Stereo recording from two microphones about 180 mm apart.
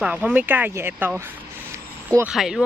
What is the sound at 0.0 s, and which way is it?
Speech, 10° right (ahead or behind).